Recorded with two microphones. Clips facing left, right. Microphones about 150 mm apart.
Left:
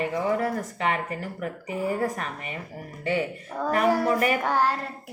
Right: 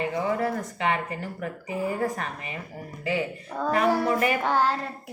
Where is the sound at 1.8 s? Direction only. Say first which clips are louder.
Left 1 dB; 30° left (ahead or behind).